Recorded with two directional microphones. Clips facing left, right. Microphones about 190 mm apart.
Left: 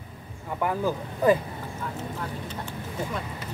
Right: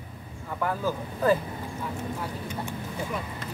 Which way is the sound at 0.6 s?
15° left (ahead or behind).